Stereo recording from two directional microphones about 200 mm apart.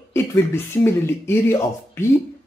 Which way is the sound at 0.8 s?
10° left (ahead or behind).